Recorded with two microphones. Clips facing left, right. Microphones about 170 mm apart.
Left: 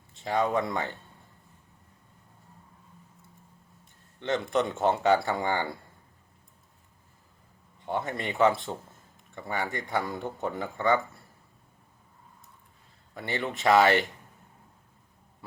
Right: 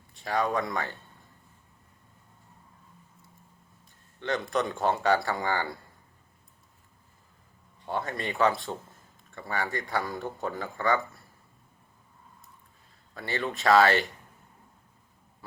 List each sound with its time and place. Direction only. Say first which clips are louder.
0.1 s speech: left 1 dB; 25° left (ahead or behind)
4.2 s speech: left 2 dB; 20° left (ahead or behind)
7.9 s speech: left 1 dB; 20° left (ahead or behind)
13.1 s speech: even; 20° left (ahead or behind)